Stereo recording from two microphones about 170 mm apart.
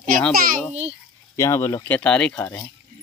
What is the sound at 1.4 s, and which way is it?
Speech, 15° left (ahead or behind).